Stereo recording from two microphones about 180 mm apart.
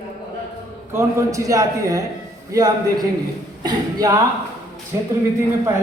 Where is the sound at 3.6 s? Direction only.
20° right (ahead or behind).